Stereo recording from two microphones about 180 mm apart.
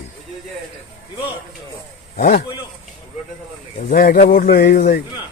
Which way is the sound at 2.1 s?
55° left (ahead or behind).